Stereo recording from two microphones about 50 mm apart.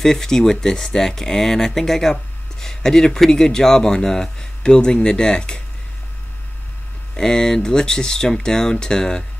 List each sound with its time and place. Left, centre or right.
0.0 s speech: centre
7.2 s speech: centre